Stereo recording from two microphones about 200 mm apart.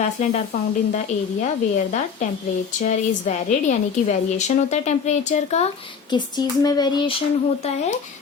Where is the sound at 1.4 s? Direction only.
35° left (ahead or behind).